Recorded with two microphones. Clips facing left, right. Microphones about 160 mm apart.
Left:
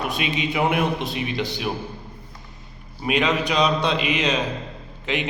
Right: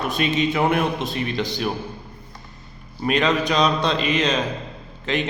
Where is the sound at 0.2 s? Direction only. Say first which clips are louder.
Right 4 dB; 10° left (ahead or behind).